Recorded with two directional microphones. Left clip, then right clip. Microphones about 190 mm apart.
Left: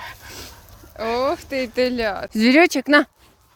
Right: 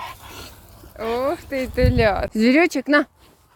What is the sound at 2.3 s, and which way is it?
Speech, 35° left (ahead or behind).